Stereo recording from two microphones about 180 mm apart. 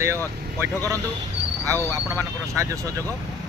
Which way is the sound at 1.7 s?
10° left (ahead or behind).